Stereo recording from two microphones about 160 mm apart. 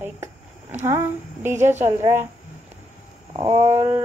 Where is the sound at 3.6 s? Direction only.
40° right (ahead or behind).